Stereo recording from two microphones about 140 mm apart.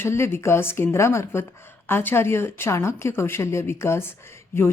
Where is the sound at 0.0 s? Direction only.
20° left (ahead or behind).